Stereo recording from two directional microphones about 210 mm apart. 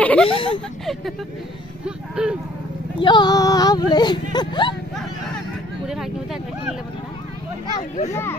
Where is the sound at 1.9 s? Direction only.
5° right (ahead or behind).